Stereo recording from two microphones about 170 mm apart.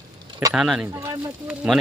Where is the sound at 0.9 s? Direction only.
15° right (ahead or behind).